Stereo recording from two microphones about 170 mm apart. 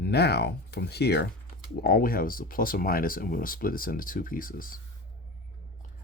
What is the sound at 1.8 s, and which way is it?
Speech, 60° left (ahead or behind).